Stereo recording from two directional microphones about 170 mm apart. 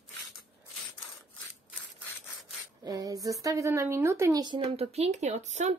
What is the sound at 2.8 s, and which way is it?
Speech, 20° right (ahead or behind).